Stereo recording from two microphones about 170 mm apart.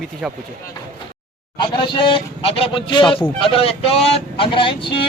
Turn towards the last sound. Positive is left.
turn(degrees=30)  # may be behind; listen again after turning